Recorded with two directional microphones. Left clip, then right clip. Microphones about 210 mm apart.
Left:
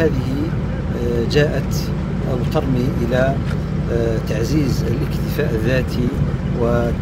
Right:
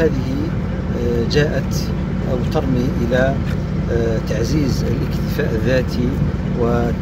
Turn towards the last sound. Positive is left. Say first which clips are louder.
# right 1 dB
turn(degrees=35)  # may be behind; listen again after turning